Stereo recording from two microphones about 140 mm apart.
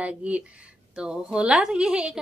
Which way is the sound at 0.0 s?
10° right (ahead or behind).